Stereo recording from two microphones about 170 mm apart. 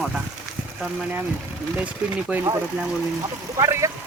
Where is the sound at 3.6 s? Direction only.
15° right (ahead or behind).